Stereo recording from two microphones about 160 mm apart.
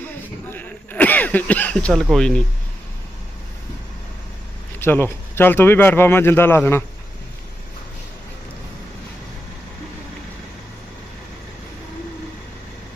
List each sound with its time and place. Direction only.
0.0 s throat clearing: 10° left (ahead or behind)
4.8 s speech: 15° left (ahead or behind)